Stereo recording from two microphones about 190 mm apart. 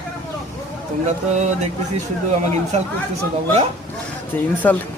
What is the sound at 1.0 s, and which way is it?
Speech, 40° right (ahead or behind).